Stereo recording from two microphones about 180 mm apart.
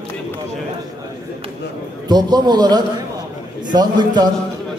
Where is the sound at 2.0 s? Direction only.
25° right (ahead or behind).